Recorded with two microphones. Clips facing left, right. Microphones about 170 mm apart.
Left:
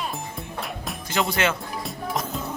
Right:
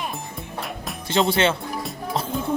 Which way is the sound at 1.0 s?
30° right (ahead or behind).